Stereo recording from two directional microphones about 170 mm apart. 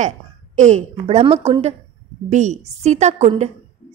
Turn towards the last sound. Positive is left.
turn(degrees=-40)  # may be behind; listen again after turning